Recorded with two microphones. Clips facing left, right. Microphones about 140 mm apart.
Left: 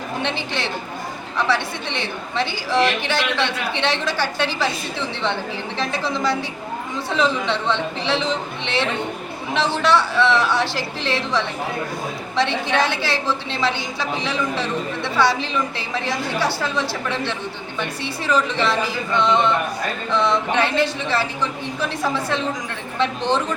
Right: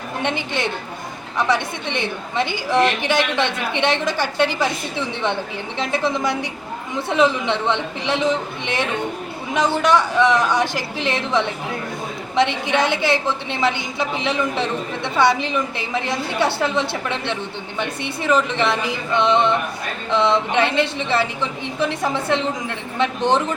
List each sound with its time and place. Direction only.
1.4 s a woman's voice: 15° right (ahead or behind)